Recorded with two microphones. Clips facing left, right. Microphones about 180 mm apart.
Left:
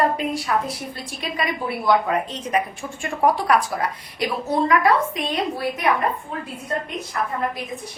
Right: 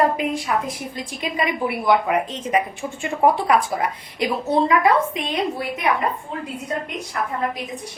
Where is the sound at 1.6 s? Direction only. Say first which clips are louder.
Even; 20° right (ahead or behind).